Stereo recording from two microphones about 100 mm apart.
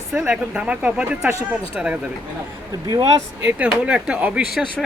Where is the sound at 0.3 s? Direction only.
15° right (ahead or behind).